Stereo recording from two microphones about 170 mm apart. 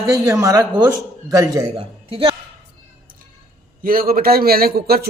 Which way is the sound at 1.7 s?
30° right (ahead or behind).